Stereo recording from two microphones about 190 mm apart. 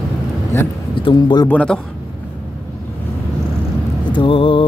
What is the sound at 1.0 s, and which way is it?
Speech, 25° left (ahead or behind).